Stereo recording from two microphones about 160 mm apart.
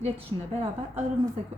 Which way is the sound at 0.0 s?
35° right (ahead or behind).